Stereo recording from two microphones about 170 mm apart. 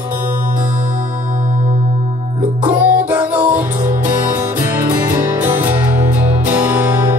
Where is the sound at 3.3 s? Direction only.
10° right (ahead or behind).